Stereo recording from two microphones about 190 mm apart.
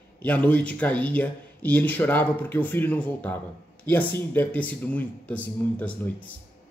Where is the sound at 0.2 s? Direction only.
10° left (ahead or behind).